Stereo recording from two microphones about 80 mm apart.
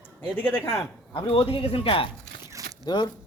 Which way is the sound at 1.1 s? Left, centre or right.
Left.